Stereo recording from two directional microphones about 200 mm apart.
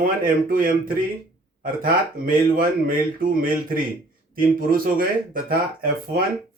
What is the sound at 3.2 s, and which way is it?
Speech, 45° right (ahead or behind).